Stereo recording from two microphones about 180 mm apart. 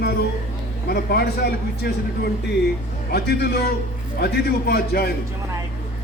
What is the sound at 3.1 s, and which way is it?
Speech, 60° left (ahead or behind).